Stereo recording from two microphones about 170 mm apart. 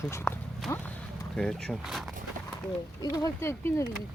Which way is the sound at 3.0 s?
20° left (ahead or behind).